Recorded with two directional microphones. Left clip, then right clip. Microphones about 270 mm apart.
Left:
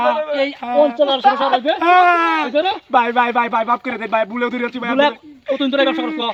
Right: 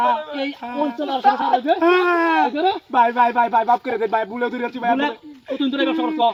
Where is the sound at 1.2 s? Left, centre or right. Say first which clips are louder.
Left 2 dB; centre.